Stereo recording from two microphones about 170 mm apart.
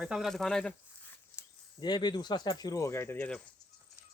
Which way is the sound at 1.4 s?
15° left (ahead or behind).